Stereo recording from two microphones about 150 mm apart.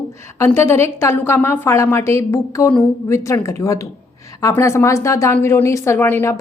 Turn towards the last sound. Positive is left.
turn(degrees=15)  # may be behind; listen again after turning